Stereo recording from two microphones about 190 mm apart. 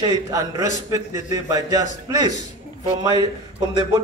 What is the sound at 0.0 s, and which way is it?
A man's voice, 20° right (ahead or behind).